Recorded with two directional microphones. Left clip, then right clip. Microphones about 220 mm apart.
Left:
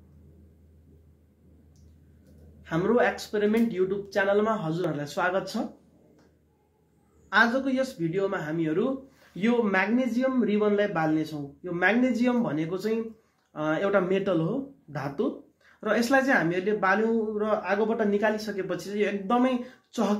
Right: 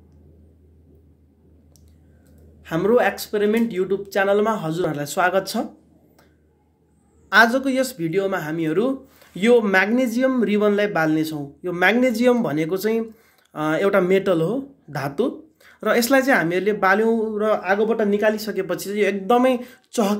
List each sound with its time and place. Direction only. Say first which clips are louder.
2.6 s speech: right 6 dB; 45° right (ahead or behind)
7.2 s speech: right 7 dB; 50° right (ahead or behind)